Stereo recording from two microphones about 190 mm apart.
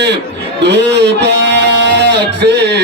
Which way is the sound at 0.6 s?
65° right (ahead or behind).